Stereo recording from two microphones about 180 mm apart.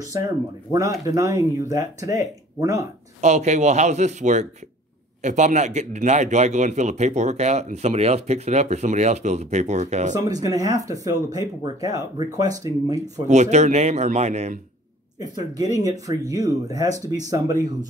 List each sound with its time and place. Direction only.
0.7 s speech: 20° right (ahead or behind)
3.2 s a man's voice: 40° right (ahead or behind)
10.2 s speech: 20° right (ahead or behind)
13.3 s a man's voice: 40° right (ahead or behind)
15.1 s speech: 20° right (ahead or behind)